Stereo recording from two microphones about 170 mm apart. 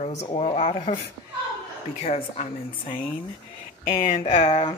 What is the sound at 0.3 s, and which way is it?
Speech, 35° left (ahead or behind).